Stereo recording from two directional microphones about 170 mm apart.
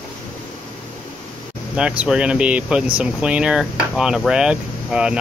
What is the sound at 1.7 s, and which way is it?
Speech, 5° right (ahead or behind).